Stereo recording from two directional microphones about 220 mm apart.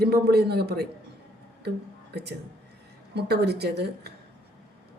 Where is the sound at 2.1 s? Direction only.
50° right (ahead or behind).